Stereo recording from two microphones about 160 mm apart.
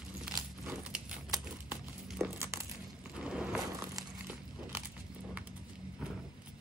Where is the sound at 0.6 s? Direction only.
5° right (ahead or behind).